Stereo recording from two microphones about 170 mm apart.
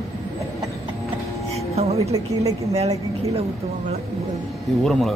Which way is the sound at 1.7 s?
40° right (ahead or behind).